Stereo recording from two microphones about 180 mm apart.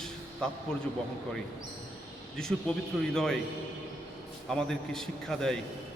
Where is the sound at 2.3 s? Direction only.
5° left (ahead or behind).